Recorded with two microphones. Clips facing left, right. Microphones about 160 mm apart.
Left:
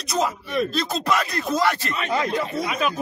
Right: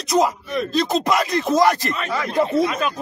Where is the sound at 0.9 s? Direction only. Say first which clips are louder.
Right 5 dB; 20° right (ahead or behind).